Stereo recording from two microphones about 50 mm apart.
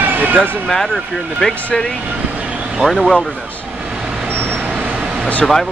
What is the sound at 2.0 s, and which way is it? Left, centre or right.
Vehicle, right.